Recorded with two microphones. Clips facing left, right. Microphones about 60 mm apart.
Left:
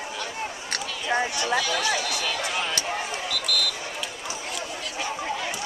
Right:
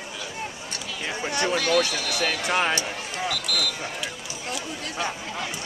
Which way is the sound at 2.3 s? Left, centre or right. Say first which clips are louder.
Right 4 dB; right.